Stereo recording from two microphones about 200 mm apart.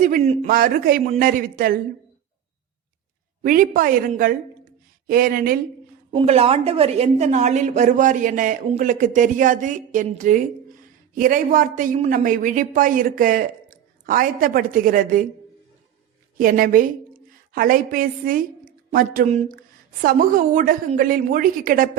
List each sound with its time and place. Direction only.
0.0 s speech: 40° right (ahead or behind)
3.4 s speech: 45° right (ahead or behind)
6.1 s a woman's voice: 30° right (ahead or behind)
16.4 s a woman's voice: 45° right (ahead or behind)